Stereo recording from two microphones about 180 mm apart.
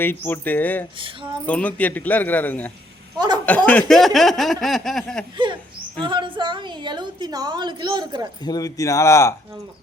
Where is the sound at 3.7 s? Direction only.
5° left (ahead or behind).